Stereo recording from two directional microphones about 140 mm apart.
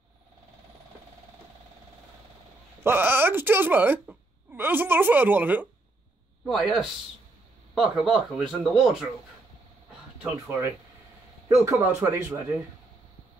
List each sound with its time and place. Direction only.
2.8 s speech: 15° right (ahead or behind)
6.4 s speech: centre (ahead or behind)
10.2 s speech: 15° right (ahead or behind)